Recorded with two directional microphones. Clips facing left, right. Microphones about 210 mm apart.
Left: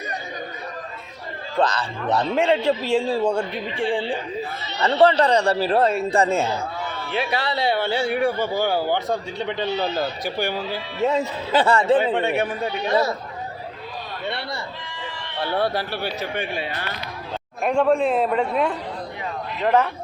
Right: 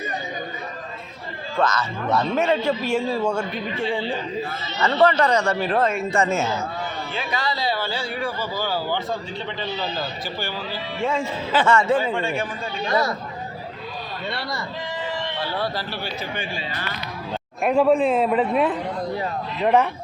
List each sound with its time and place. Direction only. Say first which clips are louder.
1.5 s speech: left 1 dB; 30° left (ahead or behind)
3.2 s a man's voice: left 2 dB; 15° left (ahead or behind)
3.8 s speech: left 2 dB; 30° left (ahead or behind)
7.1 s speech: left 5 dB; 65° left (ahead or behind)
8.3 s speech: left 5 dB; 20° left (ahead or behind)
8.6 s speech: left 2 dB; 55° left (ahead or behind)
11.0 s speech: left 3 dB; 40° left (ahead or behind)
11.9 s speech: left 3 dB; 20° left (ahead or behind)
12.2 s speech: left 4 dB; 65° left (ahead or behind)
15.5 s speech: left 8 dB; 60° left (ahead or behind)
17.6 s a man's voice: right 1 dB; 5° right (ahead or behind)